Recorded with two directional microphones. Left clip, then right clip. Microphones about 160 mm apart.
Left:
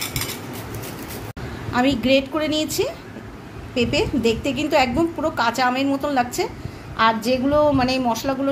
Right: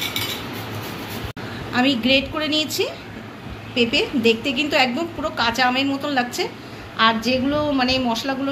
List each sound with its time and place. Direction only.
1.7 s a woman's voice: 90° left